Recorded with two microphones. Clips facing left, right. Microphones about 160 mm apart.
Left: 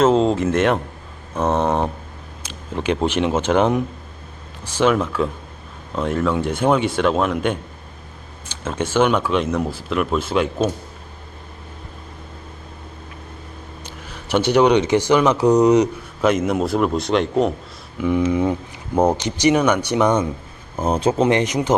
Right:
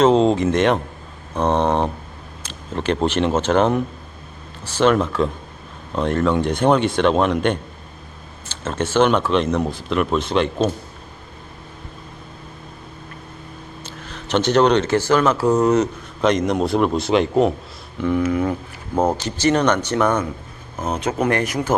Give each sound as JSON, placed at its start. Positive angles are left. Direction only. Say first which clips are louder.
{"t": 0.0, "sound": "a man's voice", "louder": "right 1 dB", "side_deg": 5}
{"t": 13.8, "sound": "speech", "louder": "right 1 dB", "side_deg": 10}
{"t": 18.0, "sound": "speech", "louder": "left 1 dB", "side_deg": 20}
{"t": 20.7, "sound": "speech", "louder": "left 4 dB", "side_deg": 30}